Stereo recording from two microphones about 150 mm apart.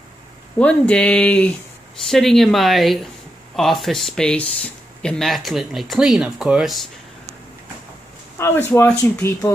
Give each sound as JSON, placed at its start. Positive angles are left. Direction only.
{"t": 0.6, "sound": "speech", "side_deg": 10}
{"t": 8.4, "sound": "speech", "side_deg": 15}